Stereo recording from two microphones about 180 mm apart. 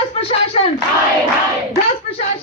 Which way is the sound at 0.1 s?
35° left (ahead or behind).